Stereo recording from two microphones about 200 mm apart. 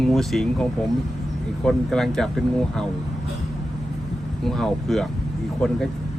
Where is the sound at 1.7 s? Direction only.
Centre (ahead or behind).